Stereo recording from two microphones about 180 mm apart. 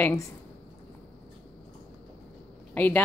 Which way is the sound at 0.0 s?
15° left (ahead or behind).